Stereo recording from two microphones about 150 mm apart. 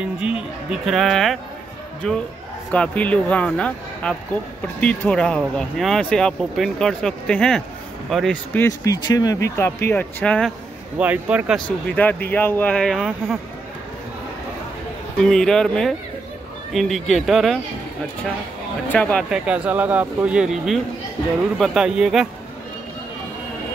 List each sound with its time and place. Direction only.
0.2 s speech: 5° right (ahead or behind)
8.5 s speech: 20° left (ahead or behind)
11.0 s speech: 10° right (ahead or behind)
11.9 s speech: 10° left (ahead or behind)
15.2 s speech: 5° left (ahead or behind)
18.9 s speech: 10° left (ahead or behind)
19.3 s speech: 5° right (ahead or behind)